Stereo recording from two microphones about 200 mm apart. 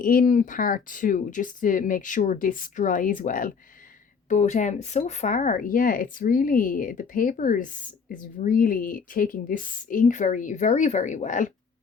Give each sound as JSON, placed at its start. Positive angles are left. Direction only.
{"t": 0.0, "sound": "speech", "side_deg": 45}